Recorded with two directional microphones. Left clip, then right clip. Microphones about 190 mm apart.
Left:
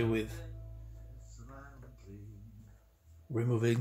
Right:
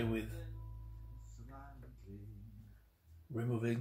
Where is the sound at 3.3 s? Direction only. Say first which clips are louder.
Left 7 dB; 60° left (ahead or behind).